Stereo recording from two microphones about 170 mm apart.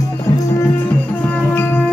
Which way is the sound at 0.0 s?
20° left (ahead or behind).